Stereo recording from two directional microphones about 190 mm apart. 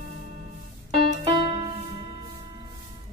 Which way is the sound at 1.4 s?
30° right (ahead or behind).